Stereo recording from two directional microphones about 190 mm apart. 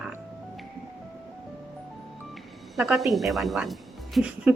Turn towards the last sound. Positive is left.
turn(degrees=-5)  # may be behind; listen again after turning